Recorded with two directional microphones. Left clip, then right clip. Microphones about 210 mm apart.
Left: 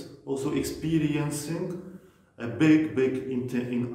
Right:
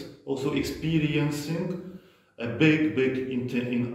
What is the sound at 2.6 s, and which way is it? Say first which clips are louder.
Speech: even; 15° left (ahead or behind).